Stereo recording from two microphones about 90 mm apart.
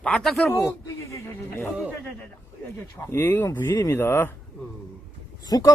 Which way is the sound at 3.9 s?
25° left (ahead or behind).